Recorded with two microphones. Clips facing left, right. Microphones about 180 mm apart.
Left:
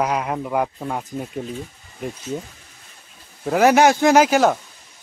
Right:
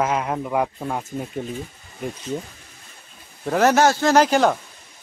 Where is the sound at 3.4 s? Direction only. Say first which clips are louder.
Left 2 dB; 10° left (ahead or behind).